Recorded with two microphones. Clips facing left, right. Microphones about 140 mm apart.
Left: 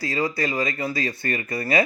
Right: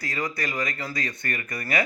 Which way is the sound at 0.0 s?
30° left (ahead or behind).